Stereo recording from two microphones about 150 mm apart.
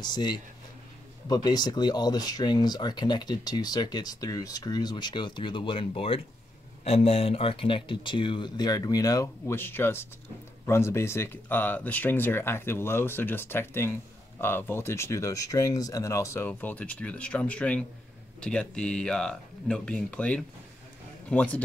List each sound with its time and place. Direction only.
0.0 s speech: 30° left (ahead or behind); by 21.6 s 10° left (ahead or behind)